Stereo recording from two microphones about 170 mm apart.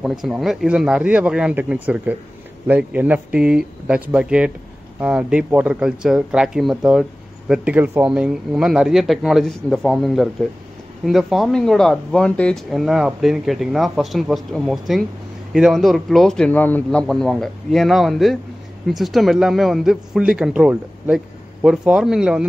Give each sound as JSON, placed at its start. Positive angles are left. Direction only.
{"t": 0.2, "sound": "speech", "side_deg": -5}